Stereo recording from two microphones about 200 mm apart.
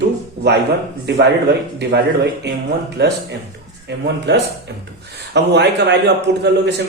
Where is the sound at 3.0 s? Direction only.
55° right (ahead or behind).